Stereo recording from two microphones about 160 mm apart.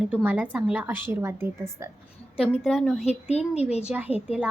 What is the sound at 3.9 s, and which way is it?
Speech, 5° right (ahead or behind).